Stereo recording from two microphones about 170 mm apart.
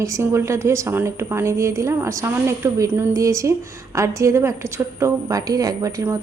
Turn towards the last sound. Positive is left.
turn(degrees=-20)  # may be behind; listen again after turning